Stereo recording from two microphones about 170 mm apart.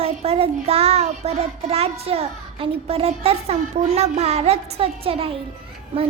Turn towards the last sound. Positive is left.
turn(degrees=-30)  # may be behind; listen again after turning